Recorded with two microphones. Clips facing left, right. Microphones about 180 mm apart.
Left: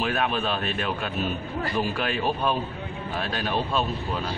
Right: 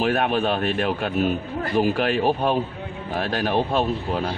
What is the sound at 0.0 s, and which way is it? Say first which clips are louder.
Speech: right 5 dB; 55° right (ahead or behind).